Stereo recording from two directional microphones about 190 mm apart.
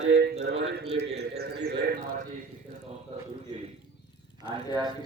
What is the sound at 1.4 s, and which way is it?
Speech, 55° right (ahead or behind).